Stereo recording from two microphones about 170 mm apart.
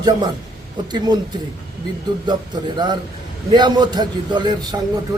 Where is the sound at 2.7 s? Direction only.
25° right (ahead or behind).